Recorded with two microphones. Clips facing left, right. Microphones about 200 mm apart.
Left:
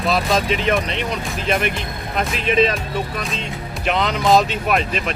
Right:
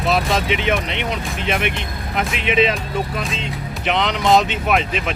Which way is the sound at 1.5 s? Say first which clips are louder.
Left 1 dB; centre (ahead or behind).